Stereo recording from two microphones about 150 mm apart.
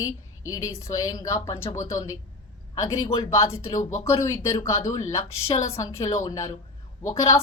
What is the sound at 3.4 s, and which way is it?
Speech, 40° left (ahead or behind).